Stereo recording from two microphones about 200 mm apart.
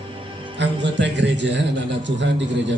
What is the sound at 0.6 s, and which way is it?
A man's voice, 60° right (ahead or behind).